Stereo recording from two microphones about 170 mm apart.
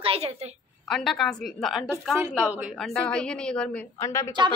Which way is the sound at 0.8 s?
Centre (ahead or behind).